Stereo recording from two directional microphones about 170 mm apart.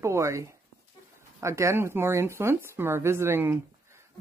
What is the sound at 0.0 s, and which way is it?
Speech, 15° right (ahead or behind).